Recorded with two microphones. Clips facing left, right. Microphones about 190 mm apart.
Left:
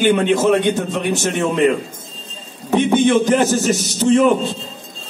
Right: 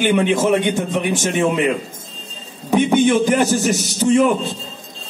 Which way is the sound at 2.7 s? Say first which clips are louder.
Even; 10° right (ahead or behind).